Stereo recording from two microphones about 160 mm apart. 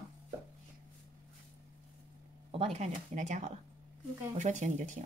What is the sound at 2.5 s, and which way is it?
Speech, 40° right (ahead or behind).